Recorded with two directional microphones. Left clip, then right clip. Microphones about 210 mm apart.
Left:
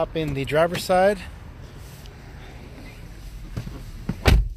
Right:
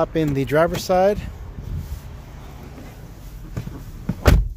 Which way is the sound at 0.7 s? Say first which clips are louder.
Right 1 dB; 10° right (ahead or behind).